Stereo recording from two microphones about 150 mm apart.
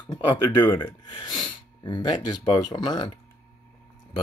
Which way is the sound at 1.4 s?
30° left (ahead or behind).